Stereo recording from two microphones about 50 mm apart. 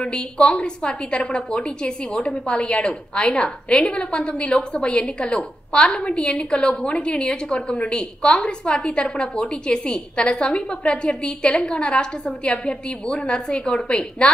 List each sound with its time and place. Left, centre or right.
0.0 s a woman's voice: centre